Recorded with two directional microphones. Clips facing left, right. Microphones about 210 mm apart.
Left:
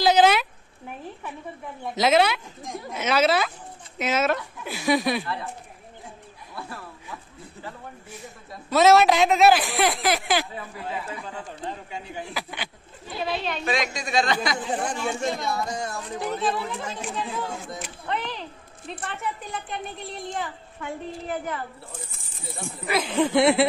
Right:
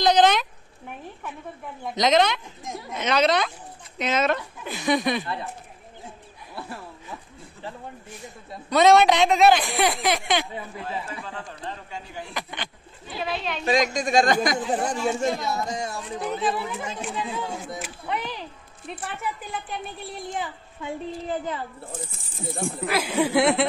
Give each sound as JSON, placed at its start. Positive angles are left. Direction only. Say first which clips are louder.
{"t": 0.0, "sound": "a sound", "louder": "even", "side_deg": 5}
{"t": 1.8, "sound": "speech", "louder": "even", "side_deg": 5}
{"t": 5.2, "sound": "speech", "louder": "even", "side_deg": -20}
{"t": 8.6, "sound": "speech", "louder": "even", "side_deg": 5}
{"t": 11.1, "sound": "speech", "louder": "left 1 dB", "side_deg": 20}
{"t": 12.4, "sound": "speech", "louder": "even", "side_deg": 5}
{"t": 13.7, "sound": "speech", "louder": "right 7 dB", "side_deg": -45}
{"t": 15.0, "sound": "speech", "louder": "right 3 dB", "side_deg": 0}
{"t": 15.5, "sound": "a child's voice", "louder": "even", "side_deg": -15}
{"t": 16.0, "sound": "speech", "louder": "left 1 dB", "side_deg": 0}
{"t": 20.3, "sound": "a child's voice", "louder": "even", "side_deg": -15}
{"t": 22.8, "sound": "speech", "louder": "left 1 dB", "side_deg": -5}